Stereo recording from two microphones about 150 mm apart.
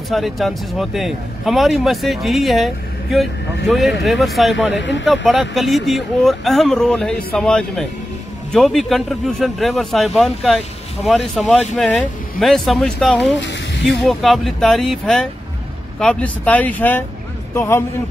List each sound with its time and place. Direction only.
0.1 s a man's voice: centre (ahead or behind); by 17.8 s 20° left (ahead or behind)